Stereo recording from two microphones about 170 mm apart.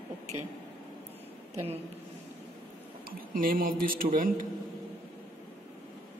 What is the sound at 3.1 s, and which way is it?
Speech, 55° right (ahead or behind).